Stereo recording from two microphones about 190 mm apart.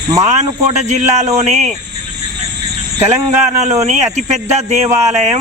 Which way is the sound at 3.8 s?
35° right (ahead or behind).